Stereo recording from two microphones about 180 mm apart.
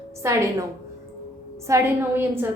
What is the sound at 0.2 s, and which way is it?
Speech, 15° right (ahead or behind).